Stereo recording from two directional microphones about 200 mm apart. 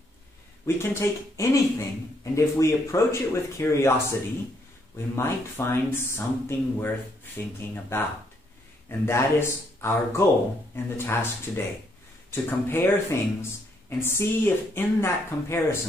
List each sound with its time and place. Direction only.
0.7 s speech: 15° left (ahead or behind)
9.0 s speech: 15° left (ahead or behind)